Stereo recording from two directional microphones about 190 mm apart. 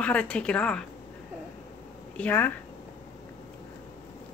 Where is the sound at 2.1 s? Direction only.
10° left (ahead or behind).